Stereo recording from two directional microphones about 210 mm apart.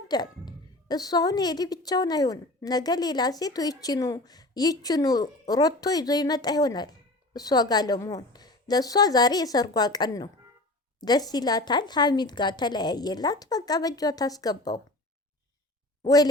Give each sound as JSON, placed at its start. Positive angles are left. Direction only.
{"t": 0.1, "sound": "a woman's voice", "side_deg": 20}